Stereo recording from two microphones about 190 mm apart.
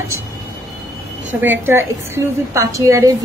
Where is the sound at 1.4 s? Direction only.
10° right (ahead or behind).